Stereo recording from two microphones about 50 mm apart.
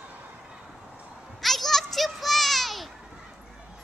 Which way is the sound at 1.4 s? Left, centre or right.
Centre.